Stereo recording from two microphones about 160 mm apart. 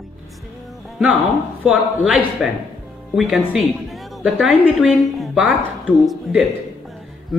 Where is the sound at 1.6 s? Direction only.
5° right (ahead or behind).